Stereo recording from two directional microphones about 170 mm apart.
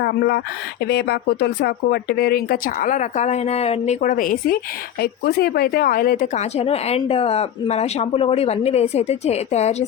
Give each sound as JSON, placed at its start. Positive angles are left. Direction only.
{"t": 0.0, "sound": "speech", "side_deg": 70}
{"t": 4.9, "sound": "a woman's voice", "side_deg": 65}